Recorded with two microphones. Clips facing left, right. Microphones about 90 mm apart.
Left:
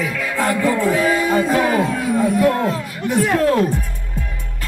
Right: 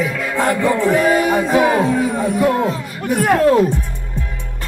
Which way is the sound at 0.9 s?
60° right (ahead or behind).